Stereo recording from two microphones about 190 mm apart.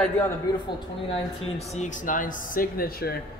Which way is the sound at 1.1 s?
35° left (ahead or behind).